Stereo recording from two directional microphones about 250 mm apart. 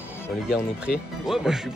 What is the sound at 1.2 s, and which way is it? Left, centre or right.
Speech, centre.